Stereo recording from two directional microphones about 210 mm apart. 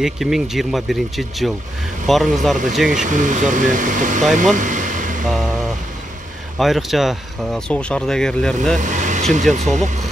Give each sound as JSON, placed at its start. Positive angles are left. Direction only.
{"t": 0.0, "sound": "speech", "side_deg": 0}
{"t": 2.9, "sound": "speech", "side_deg": -35}
{"t": 6.6, "sound": "speech", "side_deg": 0}
{"t": 8.7, "sound": "speech", "side_deg": -35}